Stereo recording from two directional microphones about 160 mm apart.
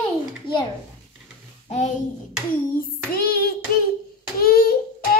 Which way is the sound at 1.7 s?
45° left (ahead or behind).